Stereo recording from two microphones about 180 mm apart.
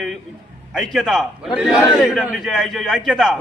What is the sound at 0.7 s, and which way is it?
A man's voice, centre (ahead or behind).